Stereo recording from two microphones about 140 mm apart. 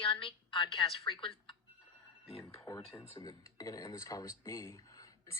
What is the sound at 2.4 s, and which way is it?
A woman's voice, 25° left (ahead or behind).